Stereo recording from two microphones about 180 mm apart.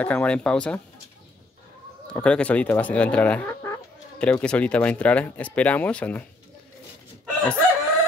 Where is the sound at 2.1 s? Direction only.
5° left (ahead or behind).